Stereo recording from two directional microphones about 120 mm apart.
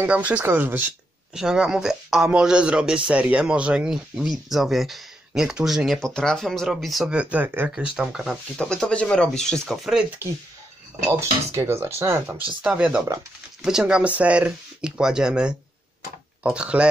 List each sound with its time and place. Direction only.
0.0 s speech: 10° right (ahead or behind)
1.3 s speech: 5° right (ahead or behind)
8.5 s speech: 10° left (ahead or behind)
11.1 s speech: 20° right (ahead or behind)
12.6 s speech: 10° right (ahead or behind)